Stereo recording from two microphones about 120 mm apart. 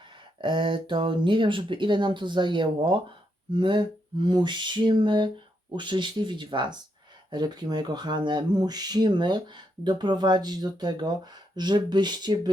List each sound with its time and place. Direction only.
0.4 s speech: 45° right (ahead or behind)